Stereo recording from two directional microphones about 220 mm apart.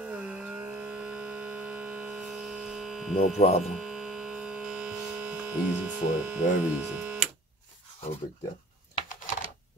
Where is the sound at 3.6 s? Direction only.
Centre (ahead or behind).